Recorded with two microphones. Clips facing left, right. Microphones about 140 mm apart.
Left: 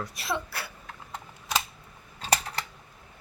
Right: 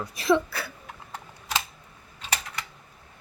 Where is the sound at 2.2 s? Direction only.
35° left (ahead or behind).